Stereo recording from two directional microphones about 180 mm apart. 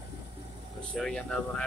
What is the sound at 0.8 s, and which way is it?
Air conditioning, 5° left (ahead or behind).